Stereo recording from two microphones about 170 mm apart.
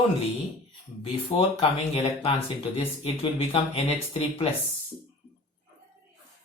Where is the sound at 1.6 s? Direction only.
35° left (ahead or behind).